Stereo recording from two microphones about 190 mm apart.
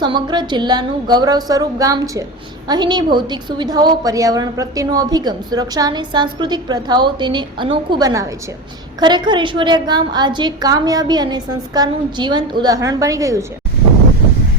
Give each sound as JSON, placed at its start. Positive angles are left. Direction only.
{"t": 0.0, "sound": "a woman's voice", "side_deg": -25}